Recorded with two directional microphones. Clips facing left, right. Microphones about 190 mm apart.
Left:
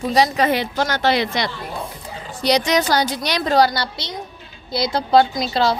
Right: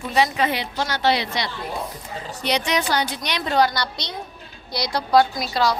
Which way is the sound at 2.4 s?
40° left (ahead or behind).